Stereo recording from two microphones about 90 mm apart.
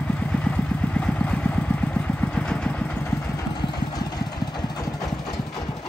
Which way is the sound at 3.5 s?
50° left (ahead or behind).